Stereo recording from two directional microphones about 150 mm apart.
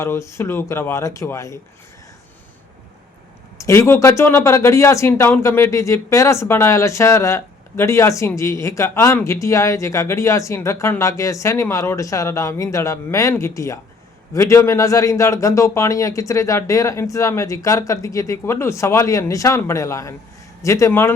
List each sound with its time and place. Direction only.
0.0 s speech: 20° left (ahead or behind)
3.6 s speech: 20° left (ahead or behind)